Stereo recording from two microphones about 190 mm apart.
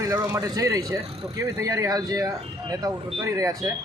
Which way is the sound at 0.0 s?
15° right (ahead or behind).